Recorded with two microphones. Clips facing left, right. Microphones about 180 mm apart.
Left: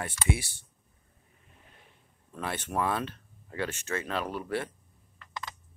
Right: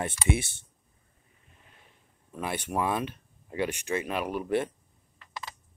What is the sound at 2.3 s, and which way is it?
Speech, 10° right (ahead or behind).